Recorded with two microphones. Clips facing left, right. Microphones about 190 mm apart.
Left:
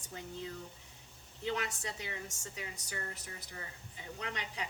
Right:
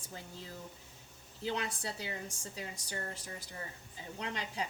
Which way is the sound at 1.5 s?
35° right (ahead or behind).